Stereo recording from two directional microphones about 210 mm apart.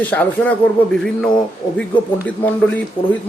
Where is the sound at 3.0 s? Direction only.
25° left (ahead or behind).